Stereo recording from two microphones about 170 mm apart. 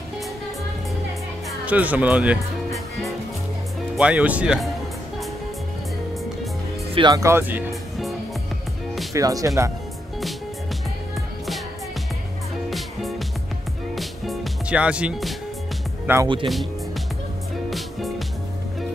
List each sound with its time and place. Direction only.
1.7 s speech: 10° right (ahead or behind)
7.0 s speech: 20° right (ahead or behind)
9.1 s speech: 20° right (ahead or behind)
12.6 s music: centre (ahead or behind)
16.1 s speech: 10° right (ahead or behind)
17.6 s music: centre (ahead or behind)